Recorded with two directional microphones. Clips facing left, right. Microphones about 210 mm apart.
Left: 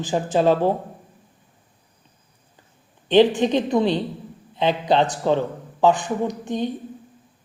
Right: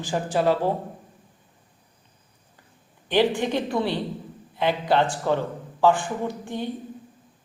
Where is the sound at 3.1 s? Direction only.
20° left (ahead or behind).